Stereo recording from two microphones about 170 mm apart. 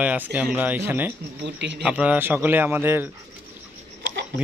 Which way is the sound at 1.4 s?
90° right.